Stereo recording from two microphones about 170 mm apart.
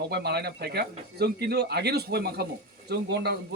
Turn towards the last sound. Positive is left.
turn(degrees=-75)  # may be behind; listen again after turning